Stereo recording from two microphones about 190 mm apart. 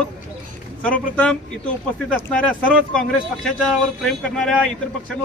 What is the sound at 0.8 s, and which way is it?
A man's voice, 5° left (ahead or behind).